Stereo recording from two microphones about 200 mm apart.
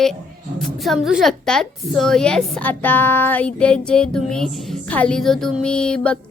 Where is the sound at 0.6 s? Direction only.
Centre (ahead or behind).